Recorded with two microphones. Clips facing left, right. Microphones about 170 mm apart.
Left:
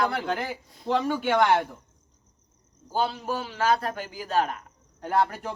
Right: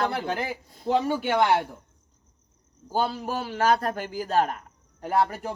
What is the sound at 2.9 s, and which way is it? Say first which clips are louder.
A man's voice: right 1 dB; 45° right (ahead or behind).